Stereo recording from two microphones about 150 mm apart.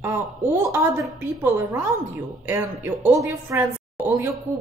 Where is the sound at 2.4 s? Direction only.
15° right (ahead or behind).